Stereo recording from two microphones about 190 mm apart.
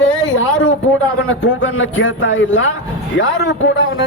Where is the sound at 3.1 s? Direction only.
70° left (ahead or behind).